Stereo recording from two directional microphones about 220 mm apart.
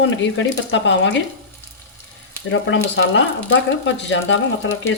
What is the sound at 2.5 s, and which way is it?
Speech, 60° left (ahead or behind).